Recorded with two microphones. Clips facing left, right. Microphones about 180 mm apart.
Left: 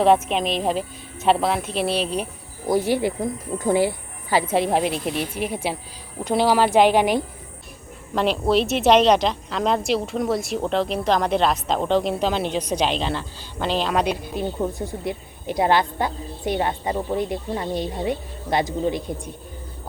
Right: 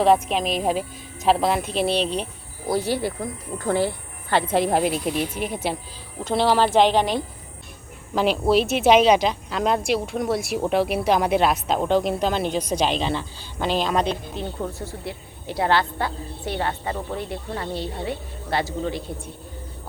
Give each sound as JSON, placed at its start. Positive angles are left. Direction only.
{"t": 0.0, "sound": "speech", "side_deg": 0}
{"t": 2.7, "sound": "speech", "side_deg": 15}
{"t": 8.1, "sound": "speech", "side_deg": 0}
{"t": 14.0, "sound": "speech", "side_deg": 10}